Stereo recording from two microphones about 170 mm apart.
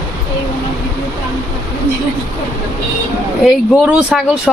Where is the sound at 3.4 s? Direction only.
5° right (ahead or behind).